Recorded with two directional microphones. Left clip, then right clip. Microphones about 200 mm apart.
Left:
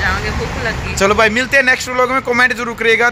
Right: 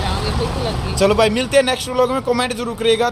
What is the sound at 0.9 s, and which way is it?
A man's voice, 5° left (ahead or behind).